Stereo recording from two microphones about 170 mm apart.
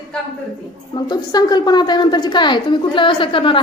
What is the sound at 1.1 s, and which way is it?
A woman's voice, 25° left (ahead or behind).